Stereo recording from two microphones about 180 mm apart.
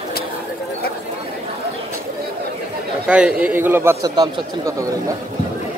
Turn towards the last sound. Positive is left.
turn(degrees=-20)  # may be behind; listen again after turning